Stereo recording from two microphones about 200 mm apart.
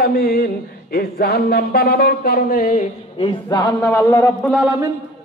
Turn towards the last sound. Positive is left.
turn(degrees=5)  # may be behind; listen again after turning